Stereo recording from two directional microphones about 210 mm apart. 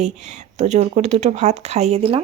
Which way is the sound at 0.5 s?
35° right (ahead or behind).